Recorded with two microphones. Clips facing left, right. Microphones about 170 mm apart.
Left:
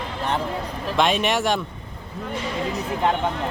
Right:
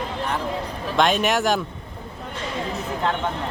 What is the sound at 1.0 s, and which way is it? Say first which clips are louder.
Speech: right 1 dB; centre (ahead or behind).